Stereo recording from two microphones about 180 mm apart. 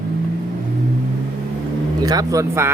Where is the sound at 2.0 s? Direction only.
20° right (ahead or behind).